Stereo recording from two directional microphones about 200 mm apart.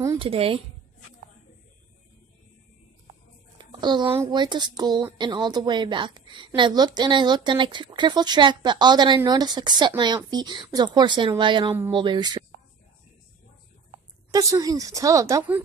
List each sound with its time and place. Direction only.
0.2 s a woman's voice: 30° right (ahead or behind)
3.5 s a sound: 20° right (ahead or behind)
4.1 s a woman's voice: 20° right (ahead or behind)
14.3 s a woman's voice: 15° right (ahead or behind)